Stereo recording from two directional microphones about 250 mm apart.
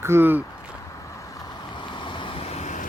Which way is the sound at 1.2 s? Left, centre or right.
Centre.